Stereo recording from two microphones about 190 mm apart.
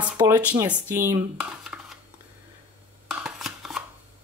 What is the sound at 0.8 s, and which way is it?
Dishes, 15° right (ahead or behind).